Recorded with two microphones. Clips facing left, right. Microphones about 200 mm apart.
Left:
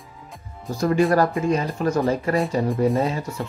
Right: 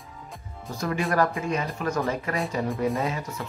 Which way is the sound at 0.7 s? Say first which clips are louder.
Left 6 dB; 35° left (ahead or behind).